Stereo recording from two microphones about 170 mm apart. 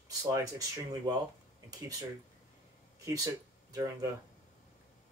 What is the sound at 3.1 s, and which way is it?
Speech, 20° right (ahead or behind).